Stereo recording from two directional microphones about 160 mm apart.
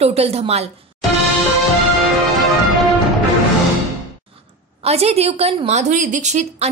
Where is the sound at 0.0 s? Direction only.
40° right (ahead or behind).